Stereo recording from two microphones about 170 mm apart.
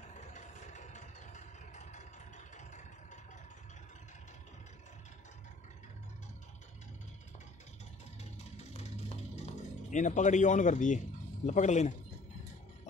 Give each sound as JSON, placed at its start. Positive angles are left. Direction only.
{"t": 0.1, "sound": "vehicle", "side_deg": 45}
{"t": 8.2, "sound": "music", "side_deg": 40}
{"t": 11.4, "sound": "a man's voice", "side_deg": 45}